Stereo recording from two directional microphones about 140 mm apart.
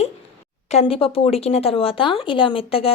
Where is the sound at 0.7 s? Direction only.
45° left (ahead or behind).